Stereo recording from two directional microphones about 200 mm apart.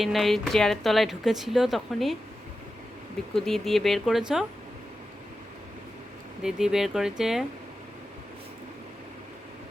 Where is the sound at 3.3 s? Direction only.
Centre (ahead or behind).